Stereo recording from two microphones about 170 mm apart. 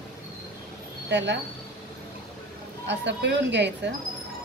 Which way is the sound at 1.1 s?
90° right.